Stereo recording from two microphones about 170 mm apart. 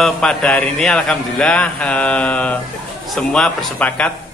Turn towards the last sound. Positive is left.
turn(degrees=10)  # may be behind; listen again after turning